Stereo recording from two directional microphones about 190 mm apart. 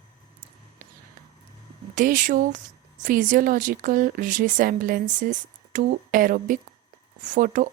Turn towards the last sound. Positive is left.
turn(degrees=-45)  # may be behind; listen again after turning